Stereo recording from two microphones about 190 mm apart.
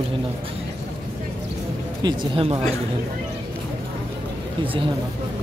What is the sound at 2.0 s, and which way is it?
Speech, 25° right (ahead or behind).